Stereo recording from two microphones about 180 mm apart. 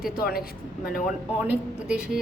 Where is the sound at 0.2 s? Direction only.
55° left (ahead or behind).